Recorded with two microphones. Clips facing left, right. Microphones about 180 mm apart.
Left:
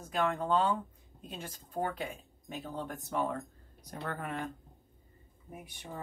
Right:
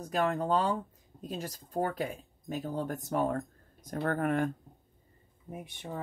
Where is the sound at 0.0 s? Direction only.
40° right (ahead or behind).